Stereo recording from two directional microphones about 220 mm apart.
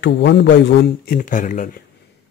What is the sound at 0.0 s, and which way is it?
Speech, 50° left (ahead or behind).